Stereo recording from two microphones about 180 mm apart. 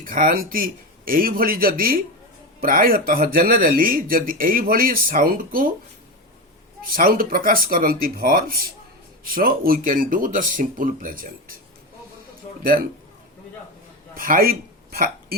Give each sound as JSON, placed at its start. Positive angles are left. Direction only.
{"t": 0.0, "sound": "speech", "side_deg": -50}
{"t": 6.9, "sound": "speech", "side_deg": -55}
{"t": 12.6, "sound": "speech", "side_deg": -55}
{"t": 14.2, "sound": "speech", "side_deg": -50}